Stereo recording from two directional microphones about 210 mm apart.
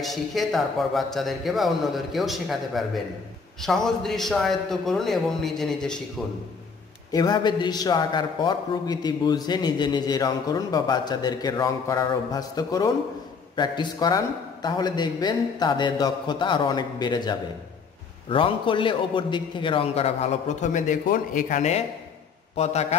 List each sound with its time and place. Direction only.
0.0 s a man's voice: centre (ahead or behind)
7.1 s a man's voice: 20° left (ahead or behind)